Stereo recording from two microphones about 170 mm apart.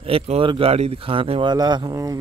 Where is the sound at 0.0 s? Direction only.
35° right (ahead or behind).